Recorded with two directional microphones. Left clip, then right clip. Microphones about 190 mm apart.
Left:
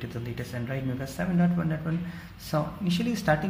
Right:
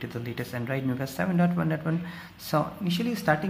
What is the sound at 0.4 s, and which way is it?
Speech, 35° right (ahead or behind).